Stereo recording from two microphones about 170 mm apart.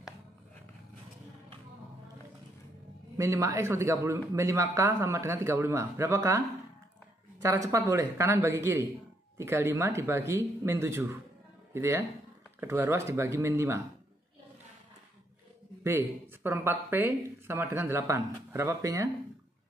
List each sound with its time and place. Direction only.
3.2 s a man's voice: 20° right (ahead or behind)
7.4 s a man's voice: 20° right (ahead or behind)
15.8 s a man's voice: 15° right (ahead or behind)